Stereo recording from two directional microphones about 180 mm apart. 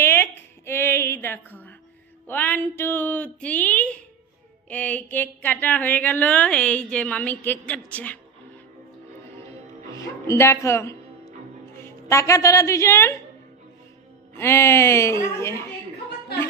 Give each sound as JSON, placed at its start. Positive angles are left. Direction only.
{"t": 0.0, "sound": "a sound", "side_deg": 10}
{"t": 2.2, "sound": "a woman's voice", "side_deg": 10}
{"t": 10.2, "sound": "a woman's voice", "side_deg": 15}
{"t": 14.3, "sound": "a woman's voice", "side_deg": 15}